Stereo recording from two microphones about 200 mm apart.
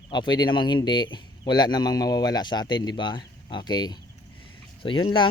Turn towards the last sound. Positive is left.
turn(degrees=25)  # may be behind; listen again after turning